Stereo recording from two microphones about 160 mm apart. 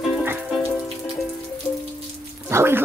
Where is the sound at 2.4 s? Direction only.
15° right (ahead or behind).